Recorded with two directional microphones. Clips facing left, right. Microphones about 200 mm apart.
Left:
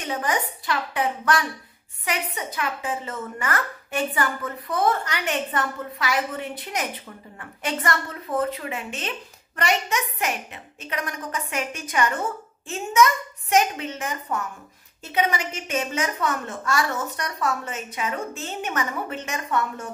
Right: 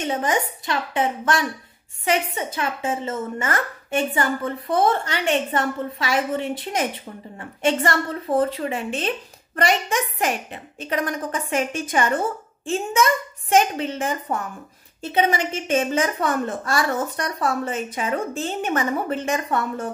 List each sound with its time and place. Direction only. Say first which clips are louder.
0.0 s a woman's voice: right 4 dB; 25° right (ahead or behind)